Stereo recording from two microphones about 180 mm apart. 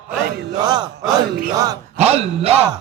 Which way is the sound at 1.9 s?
35° right (ahead or behind).